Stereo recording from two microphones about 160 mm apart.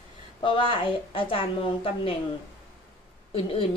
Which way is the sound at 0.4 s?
35° left (ahead or behind).